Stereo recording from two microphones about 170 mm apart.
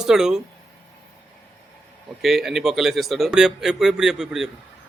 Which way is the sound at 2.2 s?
Centre (ahead or behind).